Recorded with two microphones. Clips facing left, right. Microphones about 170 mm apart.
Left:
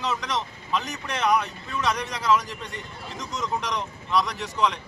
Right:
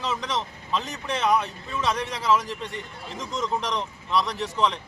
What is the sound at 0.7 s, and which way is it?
A man's voice, 30° right (ahead or behind).